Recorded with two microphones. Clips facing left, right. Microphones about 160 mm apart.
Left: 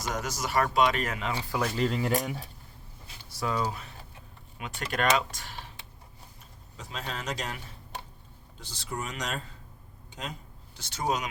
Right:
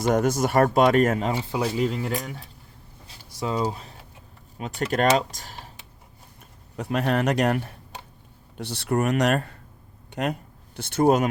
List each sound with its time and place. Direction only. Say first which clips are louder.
0.0 s speech: right 12 dB; 55° right (ahead or behind)
1.3 s speech: right 5 dB; 20° right (ahead or behind)
1.7 s speech: right 3 dB; 10° right (ahead or behind)
2.0 s speech: left 1 dB; centre (ahead or behind)
3.4 s speech: right 4 dB; 25° right (ahead or behind); by 5.7 s 40° right (ahead or behind)
6.7 s speech: right 14 dB; 60° right (ahead or behind)
10.1 s a sound: right 13 dB; 65° right (ahead or behind)
10.8 s speech: right 11 dB; 55° right (ahead or behind)